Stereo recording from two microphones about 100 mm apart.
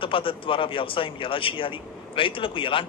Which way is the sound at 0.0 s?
60° left (ahead or behind).